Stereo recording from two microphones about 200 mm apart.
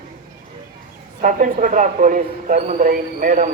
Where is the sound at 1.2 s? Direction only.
40° right (ahead or behind).